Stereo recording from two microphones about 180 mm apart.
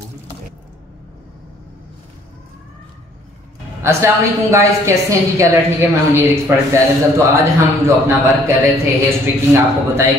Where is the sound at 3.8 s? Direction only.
15° right (ahead or behind).